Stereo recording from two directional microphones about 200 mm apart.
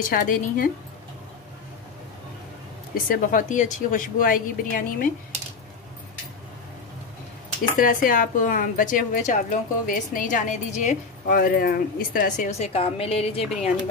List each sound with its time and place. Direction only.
0.0 s speech: 40° left (ahead or behind)
2.9 s speech: 45° left (ahead or behind)
7.7 s a woman's voice: 45° left (ahead or behind)